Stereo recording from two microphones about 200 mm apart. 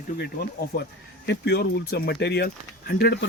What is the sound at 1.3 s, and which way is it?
Speech, 55° left (ahead or behind).